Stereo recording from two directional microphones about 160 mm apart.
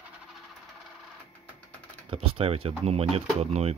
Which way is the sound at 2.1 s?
35° right (ahead or behind).